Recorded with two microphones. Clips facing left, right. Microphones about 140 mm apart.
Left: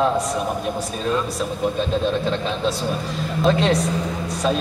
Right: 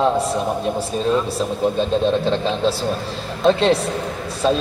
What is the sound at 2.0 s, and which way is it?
A man's voice, 30° right (ahead or behind).